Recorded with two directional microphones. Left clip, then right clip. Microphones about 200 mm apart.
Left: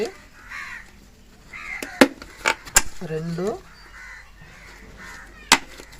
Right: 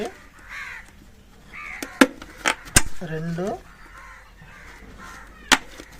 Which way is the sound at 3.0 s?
10° right (ahead or behind).